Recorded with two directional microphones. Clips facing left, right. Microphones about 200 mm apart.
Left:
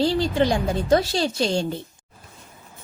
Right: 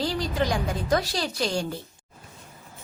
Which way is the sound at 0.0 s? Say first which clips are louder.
Left 6 dB; 30° left (ahead or behind).